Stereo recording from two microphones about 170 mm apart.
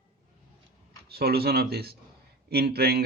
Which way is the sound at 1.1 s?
65° right (ahead or behind).